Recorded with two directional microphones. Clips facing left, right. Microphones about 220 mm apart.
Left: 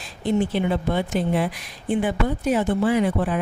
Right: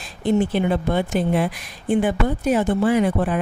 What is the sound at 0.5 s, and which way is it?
Speech, 50° right (ahead or behind).